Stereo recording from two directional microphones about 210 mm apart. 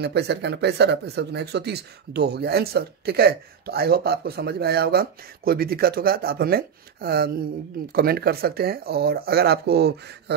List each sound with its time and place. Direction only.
0.0 s speech: 50° right (ahead or behind)